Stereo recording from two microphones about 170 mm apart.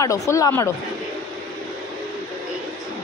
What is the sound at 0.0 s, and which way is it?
Speech, 20° left (ahead or behind).